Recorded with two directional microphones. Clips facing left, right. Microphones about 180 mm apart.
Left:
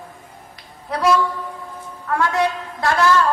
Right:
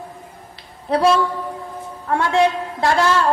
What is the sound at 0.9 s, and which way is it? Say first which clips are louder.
A woman's voice: right 2 dB; 30° right (ahead or behind).